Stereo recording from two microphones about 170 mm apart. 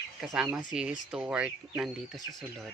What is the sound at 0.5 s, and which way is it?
Speech, 5° right (ahead or behind).